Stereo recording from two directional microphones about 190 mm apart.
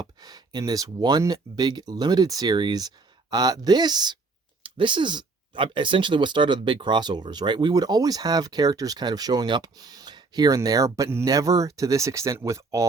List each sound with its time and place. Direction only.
0.0 s speech: 20° right (ahead or behind)